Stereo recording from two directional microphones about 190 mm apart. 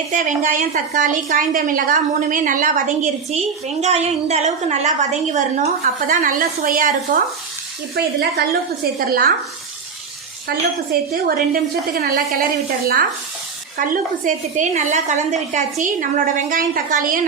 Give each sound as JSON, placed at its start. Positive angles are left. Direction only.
{"t": 0.1, "sound": "a woman's voice", "side_deg": -40}
{"t": 7.9, "sound": "a woman's voice", "side_deg": -60}
{"t": 10.5, "sound": "a woman's voice", "side_deg": -55}
{"t": 13.7, "sound": "a woman's voice", "side_deg": -45}